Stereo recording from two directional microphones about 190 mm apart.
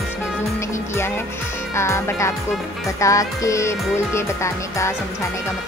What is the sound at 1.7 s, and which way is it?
Speech, 15° left (ahead or behind).